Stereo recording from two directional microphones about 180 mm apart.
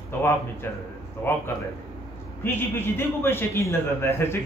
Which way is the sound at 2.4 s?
10° left (ahead or behind).